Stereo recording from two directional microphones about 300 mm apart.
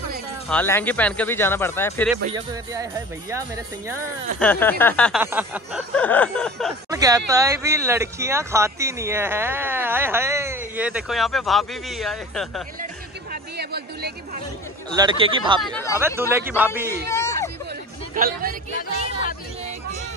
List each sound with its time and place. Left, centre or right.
0.5 s speech: centre
2.3 s speech: centre
4.4 s speech: centre
6.9 s speech: centre
12.8 s music: right
15.0 s speech: centre
15.6 s speech: centre
16.2 s speech: centre
17.1 s hubbub: centre
18.1 s speech: right